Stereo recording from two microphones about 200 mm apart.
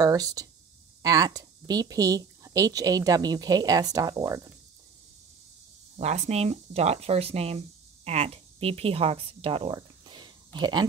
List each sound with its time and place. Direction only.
0.0 s a woman's voice: 20° right (ahead or behind)
5.9 s speech: 35° right (ahead or behind)